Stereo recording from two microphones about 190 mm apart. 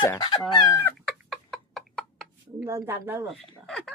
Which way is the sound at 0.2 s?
25° left (ahead or behind).